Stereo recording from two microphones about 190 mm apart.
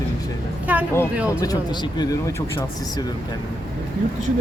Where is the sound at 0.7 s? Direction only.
10° right (ahead or behind).